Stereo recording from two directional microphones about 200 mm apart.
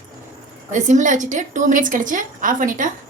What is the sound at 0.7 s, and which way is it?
A woman's voice, 40° right (ahead or behind).